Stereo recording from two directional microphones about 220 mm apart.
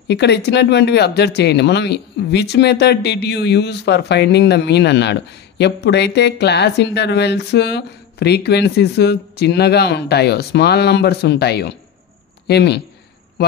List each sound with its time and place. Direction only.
0.1 s speech: 50° left (ahead or behind)